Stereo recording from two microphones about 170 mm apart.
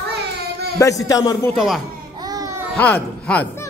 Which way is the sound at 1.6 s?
Centre (ahead or behind).